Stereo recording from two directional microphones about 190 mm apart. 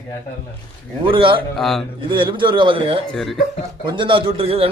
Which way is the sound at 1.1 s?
25° right (ahead or behind).